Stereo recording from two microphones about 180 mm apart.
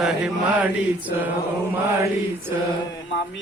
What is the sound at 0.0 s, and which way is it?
Speech, 5° right (ahead or behind).